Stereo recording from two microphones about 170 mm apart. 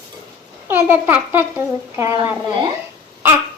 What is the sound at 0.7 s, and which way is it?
A child's voice, 10° right (ahead or behind).